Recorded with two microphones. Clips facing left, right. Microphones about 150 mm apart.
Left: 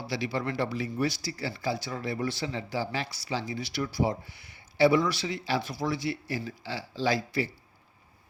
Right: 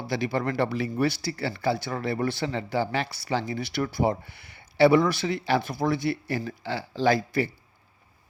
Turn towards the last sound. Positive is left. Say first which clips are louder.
# right 5 dB
turn(degrees=-55)  # may be behind; listen again after turning